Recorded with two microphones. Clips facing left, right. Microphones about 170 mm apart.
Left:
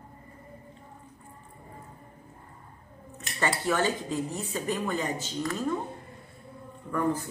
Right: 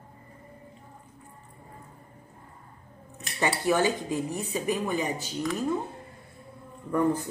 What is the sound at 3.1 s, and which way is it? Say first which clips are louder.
Speech: right 1 dB; 15° right (ahead or behind).